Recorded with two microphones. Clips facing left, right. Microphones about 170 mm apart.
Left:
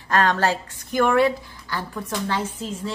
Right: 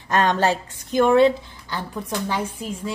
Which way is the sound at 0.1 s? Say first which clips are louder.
Right 1 dB; 20° right (ahead or behind).